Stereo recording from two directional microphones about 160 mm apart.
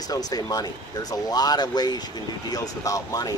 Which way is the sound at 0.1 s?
25° left (ahead or behind).